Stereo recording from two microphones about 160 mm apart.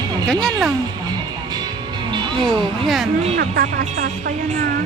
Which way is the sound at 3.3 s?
75° right (ahead or behind).